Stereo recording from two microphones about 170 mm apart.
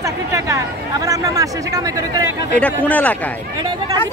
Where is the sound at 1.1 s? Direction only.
20° right (ahead or behind).